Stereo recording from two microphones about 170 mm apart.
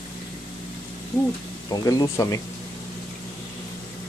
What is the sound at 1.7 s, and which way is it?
Speech, 20° left (ahead or behind).